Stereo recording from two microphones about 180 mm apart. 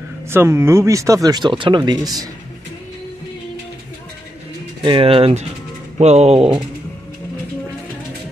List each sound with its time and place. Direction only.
0.3 s speech: 15° right (ahead or behind)
4.8 s speech: 30° right (ahead or behind)